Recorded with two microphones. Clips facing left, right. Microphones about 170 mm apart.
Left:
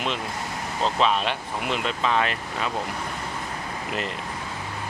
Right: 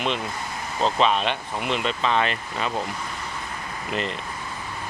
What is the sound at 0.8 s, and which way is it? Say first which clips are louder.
Speech: right 2 dB; centre (ahead or behind).